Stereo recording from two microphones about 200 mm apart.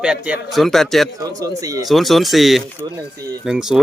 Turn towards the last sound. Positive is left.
turn(degrees=-5)  # may be behind; listen again after turning